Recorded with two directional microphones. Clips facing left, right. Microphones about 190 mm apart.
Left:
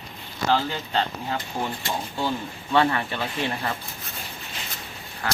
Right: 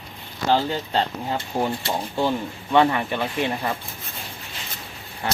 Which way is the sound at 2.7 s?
15° right (ahead or behind).